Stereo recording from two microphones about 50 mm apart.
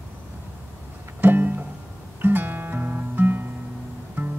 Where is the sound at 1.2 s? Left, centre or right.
Right.